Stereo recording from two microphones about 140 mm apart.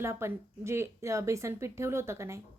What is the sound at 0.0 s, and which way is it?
Speech, 20° right (ahead or behind).